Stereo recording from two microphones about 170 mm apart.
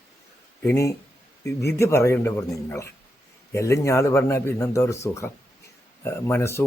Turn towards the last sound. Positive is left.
turn(degrees=15)  # may be behind; listen again after turning